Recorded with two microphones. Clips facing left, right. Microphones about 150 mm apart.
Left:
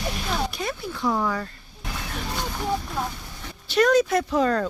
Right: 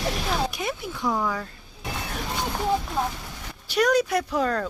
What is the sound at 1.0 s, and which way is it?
Speech, centre (ahead or behind).